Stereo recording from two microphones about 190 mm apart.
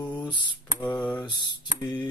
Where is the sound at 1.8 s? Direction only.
25° left (ahead or behind).